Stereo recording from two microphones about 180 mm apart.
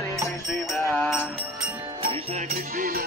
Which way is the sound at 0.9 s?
10° left (ahead or behind).